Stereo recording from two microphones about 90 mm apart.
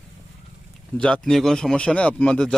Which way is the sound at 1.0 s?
15° left (ahead or behind).